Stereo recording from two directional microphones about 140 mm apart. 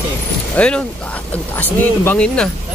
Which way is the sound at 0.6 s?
10° left (ahead or behind).